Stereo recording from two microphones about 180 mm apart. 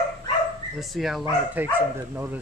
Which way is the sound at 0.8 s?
Centre (ahead or behind).